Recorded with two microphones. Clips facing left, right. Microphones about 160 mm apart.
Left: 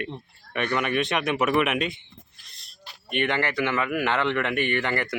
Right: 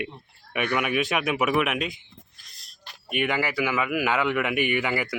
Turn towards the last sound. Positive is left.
turn(degrees=-5)  # may be behind; listen again after turning